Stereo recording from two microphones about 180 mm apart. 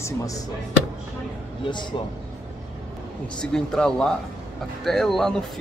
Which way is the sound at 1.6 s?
25° left (ahead or behind).